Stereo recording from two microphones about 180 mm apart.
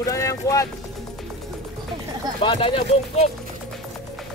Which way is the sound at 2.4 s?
30° left (ahead or behind).